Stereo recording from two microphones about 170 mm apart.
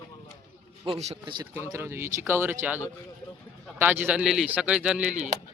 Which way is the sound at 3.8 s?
10° right (ahead or behind).